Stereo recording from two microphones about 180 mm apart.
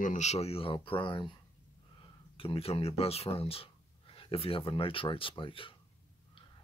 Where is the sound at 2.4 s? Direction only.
30° left (ahead or behind).